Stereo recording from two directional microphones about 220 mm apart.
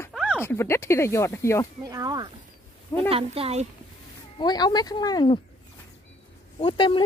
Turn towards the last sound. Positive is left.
turn(degrees=20)  # may be behind; listen again after turning